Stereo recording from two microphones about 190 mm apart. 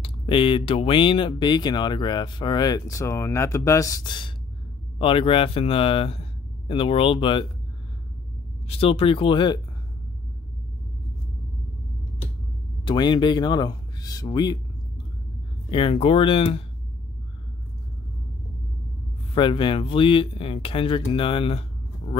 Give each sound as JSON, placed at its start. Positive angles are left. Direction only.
{"t": 0.0, "sound": "speech", "side_deg": 30}
{"t": 8.6, "sound": "speech", "side_deg": 30}
{"t": 12.8, "sound": "speech", "side_deg": 25}
{"t": 15.7, "sound": "speech", "side_deg": 30}
{"t": 19.3, "sound": "speech", "side_deg": 25}